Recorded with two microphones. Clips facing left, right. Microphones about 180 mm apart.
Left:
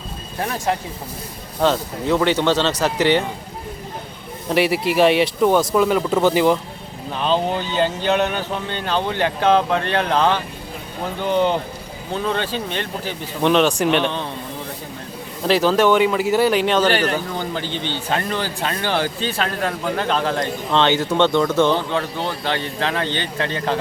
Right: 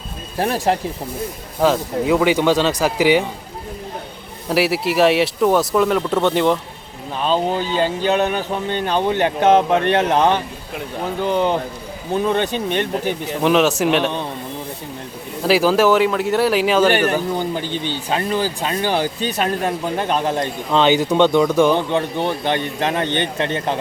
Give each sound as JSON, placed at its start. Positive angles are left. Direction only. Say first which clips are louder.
{"t": 0.3, "sound": "speech", "louder": "right 4 dB", "side_deg": -30}
{"t": 1.6, "sound": "speech", "louder": "right 2 dB", "side_deg": -5}
{"t": 4.4, "sound": "speech", "louder": "even", "side_deg": -5}
{"t": 8.4, "sound": "speech", "louder": "right 4 dB", "side_deg": -15}
{"t": 12.1, "sound": "speech", "louder": "right 4 dB", "side_deg": -15}
{"t": 13.4, "sound": "speech", "louder": "right 1 dB", "side_deg": -5}
{"t": 15.4, "sound": "speech", "louder": "right 1 dB", "side_deg": -5}